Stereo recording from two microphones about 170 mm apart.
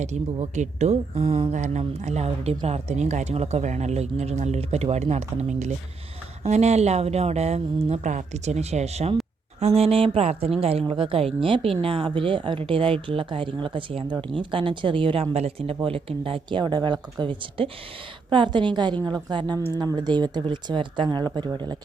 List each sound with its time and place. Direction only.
0.0 s speech: 40° right (ahead or behind); by 21.8 s 25° right (ahead or behind)